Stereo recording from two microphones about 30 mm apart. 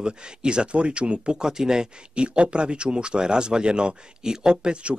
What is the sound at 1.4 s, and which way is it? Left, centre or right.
Speech, right.